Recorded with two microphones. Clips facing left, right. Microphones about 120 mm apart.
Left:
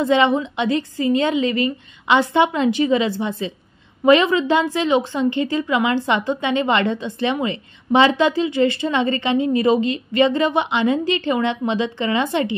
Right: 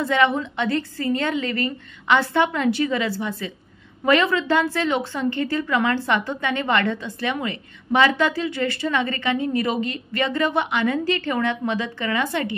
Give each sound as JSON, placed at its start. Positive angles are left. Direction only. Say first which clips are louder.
{"t": 0.0, "sound": "a woman's voice", "louder": "left 4 dB", "side_deg": 20}